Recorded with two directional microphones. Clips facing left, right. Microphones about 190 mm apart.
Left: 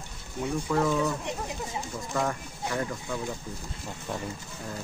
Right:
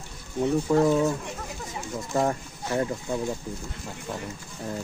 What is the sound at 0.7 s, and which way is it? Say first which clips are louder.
Speech: right 4 dB; 30° right (ahead or behind).